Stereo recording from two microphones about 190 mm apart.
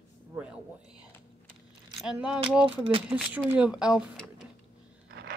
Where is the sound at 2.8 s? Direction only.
30° right (ahead or behind).